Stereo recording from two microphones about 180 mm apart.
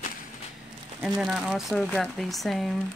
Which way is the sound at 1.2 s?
5° right (ahead or behind).